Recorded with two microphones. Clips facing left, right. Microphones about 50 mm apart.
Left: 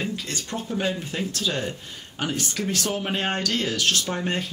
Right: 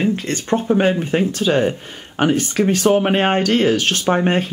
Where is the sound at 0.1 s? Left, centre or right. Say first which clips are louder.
Right 11 dB; right.